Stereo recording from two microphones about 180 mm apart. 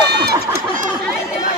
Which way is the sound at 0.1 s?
65° right (ahead or behind).